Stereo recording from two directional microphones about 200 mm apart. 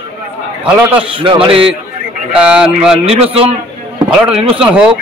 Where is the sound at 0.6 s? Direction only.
5° right (ahead or behind).